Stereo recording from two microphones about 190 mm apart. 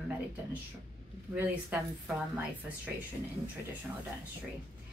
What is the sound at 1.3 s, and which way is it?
A woman's voice, 10° right (ahead or behind).